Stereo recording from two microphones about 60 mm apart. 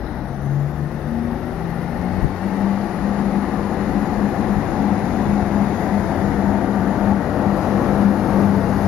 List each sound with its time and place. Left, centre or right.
4.5 s vehicle: centre